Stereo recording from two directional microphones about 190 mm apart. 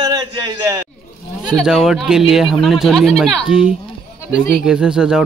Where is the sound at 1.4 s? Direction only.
5° right (ahead or behind).